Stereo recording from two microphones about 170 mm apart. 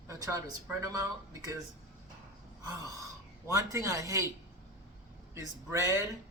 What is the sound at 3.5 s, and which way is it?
Speech, 20° right (ahead or behind).